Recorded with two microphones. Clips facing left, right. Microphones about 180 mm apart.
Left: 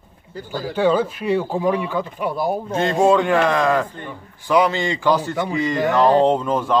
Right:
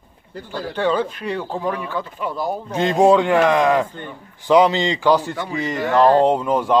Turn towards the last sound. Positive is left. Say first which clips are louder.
# right 1 dB
turn(degrees=-15)  # may be behind; listen again after turning